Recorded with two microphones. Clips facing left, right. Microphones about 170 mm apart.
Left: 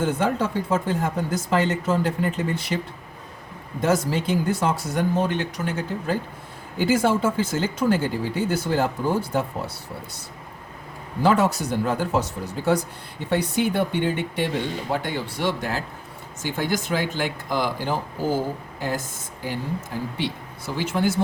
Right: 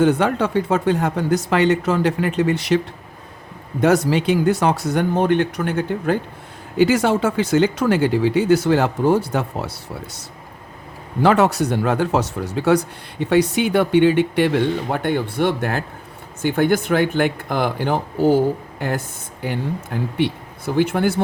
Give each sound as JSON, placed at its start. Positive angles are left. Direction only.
{"t": 0.0, "sound": "speech", "side_deg": -70}
{"t": 6.7, "sound": "speech", "side_deg": -75}
{"t": 11.2, "sound": "speech", "side_deg": -70}